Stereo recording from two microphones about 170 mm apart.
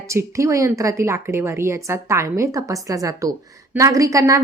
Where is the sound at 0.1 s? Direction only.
15° right (ahead or behind).